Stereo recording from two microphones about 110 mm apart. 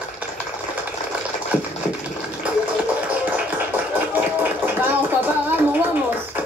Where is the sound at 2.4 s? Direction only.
10° right (ahead or behind).